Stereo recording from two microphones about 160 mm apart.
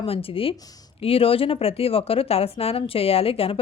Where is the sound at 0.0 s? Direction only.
35° left (ahead or behind).